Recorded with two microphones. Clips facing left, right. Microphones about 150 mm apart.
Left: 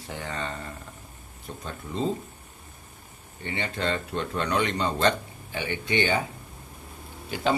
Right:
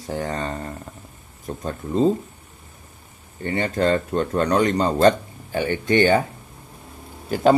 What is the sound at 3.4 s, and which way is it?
Speech, 45° right (ahead or behind).